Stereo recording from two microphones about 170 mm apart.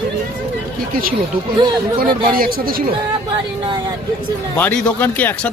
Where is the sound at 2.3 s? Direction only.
60° right (ahead or behind).